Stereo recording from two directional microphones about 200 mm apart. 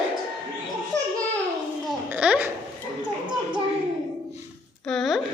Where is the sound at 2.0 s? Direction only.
5° right (ahead or behind).